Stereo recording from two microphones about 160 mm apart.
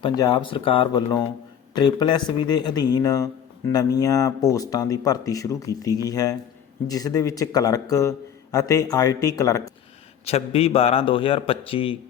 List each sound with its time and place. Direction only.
0.0 s a man's voice: 30° left (ahead or behind)
10.2 s a man's voice: 40° left (ahead or behind)